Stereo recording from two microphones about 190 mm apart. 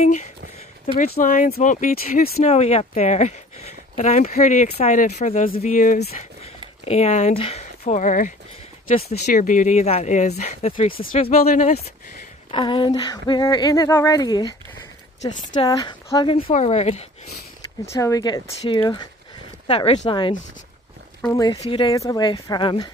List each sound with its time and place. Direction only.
0.0 s speech: 35° left (ahead or behind)
0.9 s speech: 50° left (ahead or behind)
2.4 s speech: 35° left (ahead or behind)
10.9 s speech: 50° left (ahead or behind)
11.1 s speech: 35° left (ahead or behind)
12.4 s speech: 25° left (ahead or behind)
17.8 s speech: 15° left (ahead or behind)